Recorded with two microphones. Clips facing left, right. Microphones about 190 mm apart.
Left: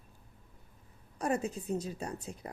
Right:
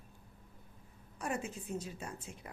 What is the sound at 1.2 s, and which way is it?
A woman's voice, 40° left (ahead or behind).